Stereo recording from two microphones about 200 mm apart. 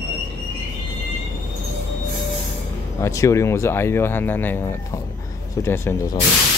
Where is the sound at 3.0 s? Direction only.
15° left (ahead or behind).